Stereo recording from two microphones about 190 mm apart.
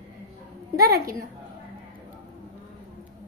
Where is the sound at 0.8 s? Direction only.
50° right (ahead or behind).